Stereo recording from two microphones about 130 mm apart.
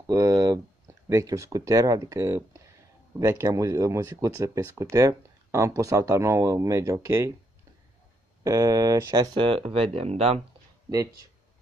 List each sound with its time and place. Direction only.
0.0 s a sound: 25° right (ahead or behind)
1.0 s speech: 25° right (ahead or behind)
8.5 s speech: 25° right (ahead or behind); by 10.4 s 50° right (ahead or behind)